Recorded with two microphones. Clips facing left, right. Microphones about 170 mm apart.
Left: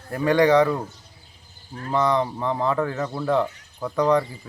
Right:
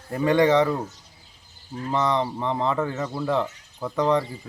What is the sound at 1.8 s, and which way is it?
Speech, centre (ahead or behind).